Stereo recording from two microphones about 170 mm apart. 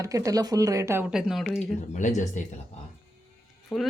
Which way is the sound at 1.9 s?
45° left (ahead or behind).